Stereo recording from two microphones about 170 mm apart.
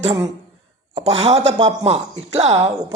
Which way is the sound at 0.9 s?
35° right (ahead or behind).